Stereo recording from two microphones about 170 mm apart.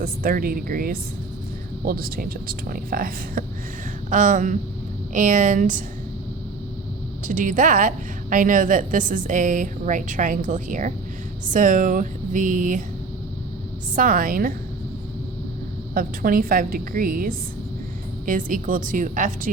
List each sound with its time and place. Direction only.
0.0 s a woman's voice: 55° right (ahead or behind)
7.3 s a woman's voice: 50° right (ahead or behind)
13.9 s a woman's voice: 50° right (ahead or behind)
16.0 s a woman's voice: 55° right (ahead or behind)